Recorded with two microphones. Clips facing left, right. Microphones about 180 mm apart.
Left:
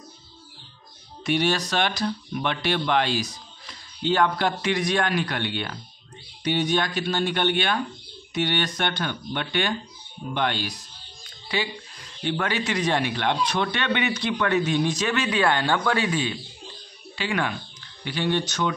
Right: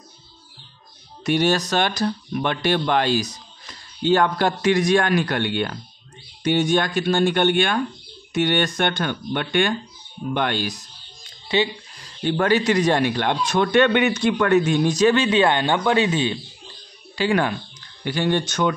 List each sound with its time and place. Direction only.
1.2 s speech: 45° right (ahead or behind)
11.4 s a sound: 25° right (ahead or behind)
12.2 s speech: 45° right (ahead or behind); by 16.3 s 25° right (ahead or behind)
17.1 s speech: 40° right (ahead or behind)